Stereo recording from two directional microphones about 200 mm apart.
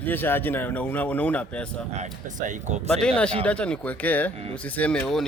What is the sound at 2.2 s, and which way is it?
Speech, 40° right (ahead or behind).